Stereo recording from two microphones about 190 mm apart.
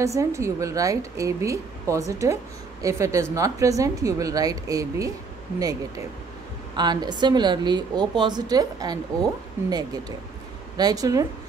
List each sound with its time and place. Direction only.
0.0 s a woman's voice: 15° right (ahead or behind)